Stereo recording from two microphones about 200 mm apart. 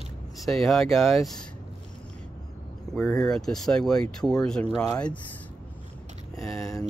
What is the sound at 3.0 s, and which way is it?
Speech, centre (ahead or behind).